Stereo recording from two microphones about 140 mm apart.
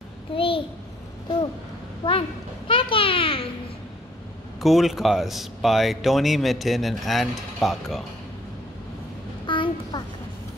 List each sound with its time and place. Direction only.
0.3 s a child's voice: 40° left (ahead or behind)
2.0 s speech: 25° left (ahead or behind)
2.7 s a child's voice: 40° left (ahead or behind)
4.6 s speech: centre (ahead or behind)
9.5 s a sound: 35° left (ahead or behind)